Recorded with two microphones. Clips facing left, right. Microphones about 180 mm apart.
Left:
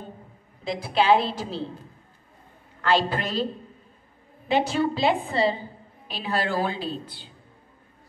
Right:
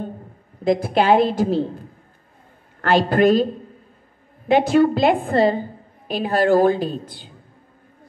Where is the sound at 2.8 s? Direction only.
50° right (ahead or behind).